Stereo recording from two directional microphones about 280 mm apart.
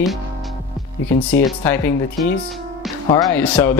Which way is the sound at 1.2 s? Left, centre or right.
Centre.